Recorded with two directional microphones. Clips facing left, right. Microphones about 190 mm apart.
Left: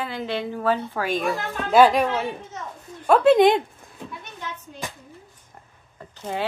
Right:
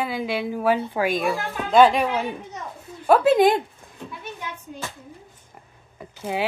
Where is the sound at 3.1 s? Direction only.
5° right (ahead or behind).